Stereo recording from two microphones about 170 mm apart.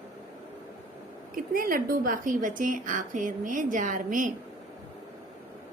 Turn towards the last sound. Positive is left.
turn(degrees=-50)  # may be behind; listen again after turning